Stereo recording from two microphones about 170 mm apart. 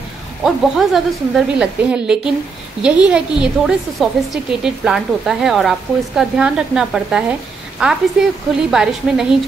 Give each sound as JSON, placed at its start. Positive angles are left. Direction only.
{"t": 0.4, "sound": "a woman's voice", "side_deg": 0}